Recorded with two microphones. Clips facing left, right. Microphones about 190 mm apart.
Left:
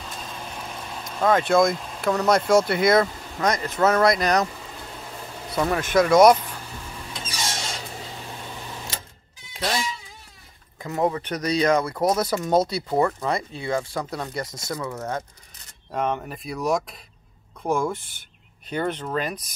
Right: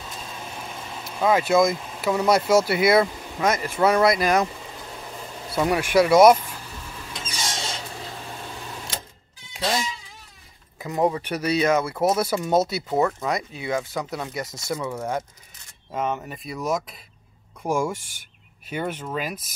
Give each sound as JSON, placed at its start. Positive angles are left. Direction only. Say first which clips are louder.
{"t": 0.4, "sound": "speech", "louder": "left 1 dB", "side_deg": -5}
{"t": 5.7, "sound": "speech", "louder": "right 1 dB", "side_deg": -10}
{"t": 9.6, "sound": "a sound", "louder": "right 1 dB", "side_deg": -20}
{"t": 10.8, "sound": "speech", "louder": "right 1 dB", "side_deg": -15}
{"t": 14.4, "sound": "speech", "louder": "even", "side_deg": -25}
{"t": 14.7, "sound": "speech", "louder": "right 3 dB", "side_deg": -10}
{"t": 17.6, "sound": "speech", "louder": "even", "side_deg": -10}